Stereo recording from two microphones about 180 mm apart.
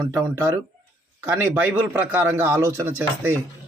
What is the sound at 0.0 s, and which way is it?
Speech, 15° right (ahead or behind).